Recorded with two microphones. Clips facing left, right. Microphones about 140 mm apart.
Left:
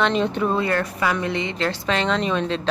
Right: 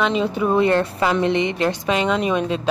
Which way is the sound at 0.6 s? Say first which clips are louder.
Right 5 dB; 25° right (ahead or behind).